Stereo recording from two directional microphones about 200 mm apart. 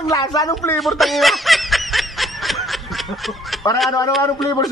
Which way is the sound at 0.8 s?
Centre (ahead or behind).